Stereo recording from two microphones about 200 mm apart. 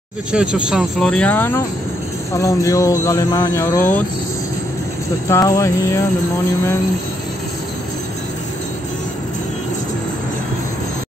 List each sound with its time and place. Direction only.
0.3 s speech: 5° right (ahead or behind)
5.3 s speech: 15° left (ahead or behind)